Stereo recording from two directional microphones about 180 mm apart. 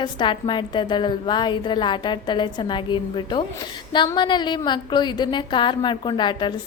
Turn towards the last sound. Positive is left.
turn(degrees=25)  # may be behind; listen again after turning